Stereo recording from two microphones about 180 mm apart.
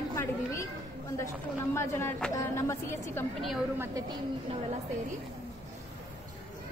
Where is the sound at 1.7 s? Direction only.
15° left (ahead or behind).